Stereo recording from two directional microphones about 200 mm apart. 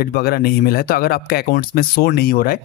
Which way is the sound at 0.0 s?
50° left (ahead or behind).